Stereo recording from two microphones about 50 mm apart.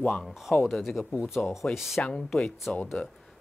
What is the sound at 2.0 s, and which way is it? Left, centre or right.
Speech, centre.